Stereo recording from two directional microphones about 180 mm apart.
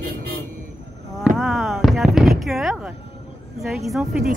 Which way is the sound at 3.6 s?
Centre (ahead or behind).